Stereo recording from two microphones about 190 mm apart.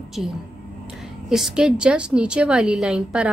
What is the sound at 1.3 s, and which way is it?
A woman's voice, 5° right (ahead or behind).